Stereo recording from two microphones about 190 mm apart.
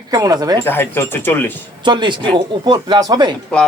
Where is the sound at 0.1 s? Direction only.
20° right (ahead or behind).